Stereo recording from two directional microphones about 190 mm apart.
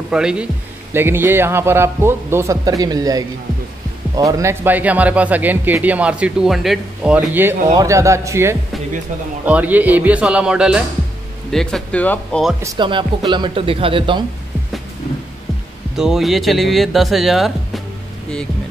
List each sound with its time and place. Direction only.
0.1 s speech: 5° right (ahead or behind)
12.7 s a man's voice: 25° right (ahead or behind)
16.0 s speech: centre (ahead or behind)